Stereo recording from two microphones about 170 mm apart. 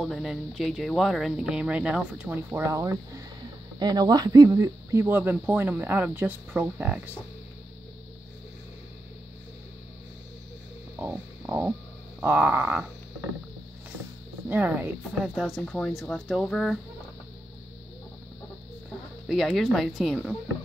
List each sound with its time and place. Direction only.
0.0 s speech: centre (ahead or behind)
11.0 s music: 10° right (ahead or behind)
12.2 s speech: 10° right (ahead or behind)
14.5 s speech: 10° right (ahead or behind)
19.2 s speech: centre (ahead or behind)